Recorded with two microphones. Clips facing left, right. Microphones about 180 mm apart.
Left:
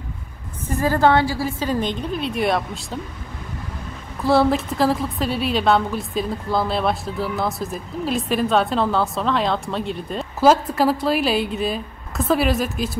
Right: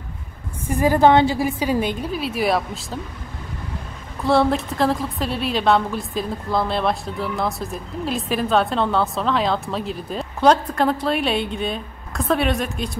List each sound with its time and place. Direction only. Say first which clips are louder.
0.7 s a woman's voice: right 2 dB; 15° right (ahead or behind)
1.6 s a woman's voice: right 1 dB; 10° right (ahead or behind)
4.2 s a woman's voice: left 1 dB; centre (ahead or behind)